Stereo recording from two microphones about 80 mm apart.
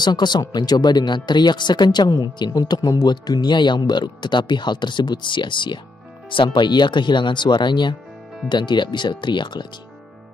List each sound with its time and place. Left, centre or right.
0.0 s speech: left
6.3 s speech: left